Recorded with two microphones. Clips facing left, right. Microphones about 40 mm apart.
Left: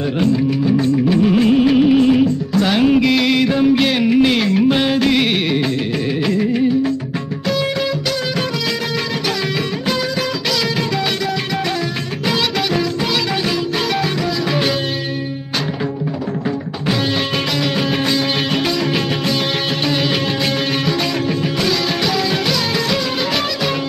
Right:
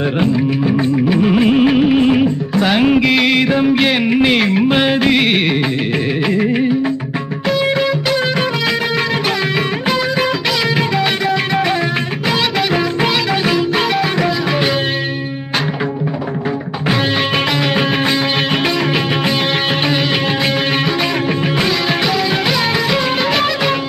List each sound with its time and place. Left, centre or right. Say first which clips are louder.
0.2 s music of bollywood: left 1 dB; right
6.2 s music: right 1 dB; right
17.7 s music: right 2 dB; right
21.3 s music: right 2 dB; right